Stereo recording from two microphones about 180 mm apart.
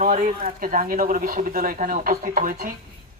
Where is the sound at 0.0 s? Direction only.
45° right (ahead or behind).